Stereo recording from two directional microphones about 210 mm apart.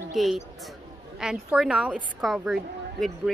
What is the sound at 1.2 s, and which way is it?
A woman's voice, centre (ahead or behind).